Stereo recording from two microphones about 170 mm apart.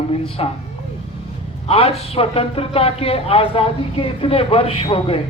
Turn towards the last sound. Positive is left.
turn(degrees=35)  # may be behind; listen again after turning